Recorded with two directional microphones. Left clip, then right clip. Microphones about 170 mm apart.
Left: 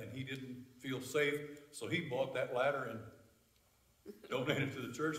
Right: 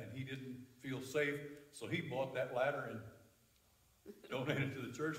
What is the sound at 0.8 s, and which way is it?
A man's voice, 15° left (ahead or behind).